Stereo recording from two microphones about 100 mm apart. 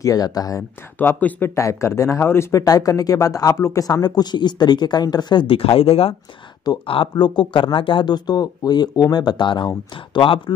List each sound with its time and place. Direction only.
0.0 s speech: 40° left (ahead or behind)
0.9 s speech: 20° left (ahead or behind)
2.6 s speech: 40° left (ahead or behind); by 6.1 s 75° left (ahead or behind)
6.9 s speech: 55° left (ahead or behind)